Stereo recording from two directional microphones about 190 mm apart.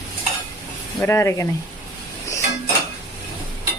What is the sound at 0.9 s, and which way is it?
Speech, 15° left (ahead or behind).